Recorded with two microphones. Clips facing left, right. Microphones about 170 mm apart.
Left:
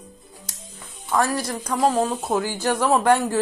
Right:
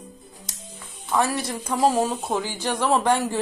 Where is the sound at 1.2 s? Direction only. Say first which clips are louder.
Left 1 dB; 25° right (ahead or behind).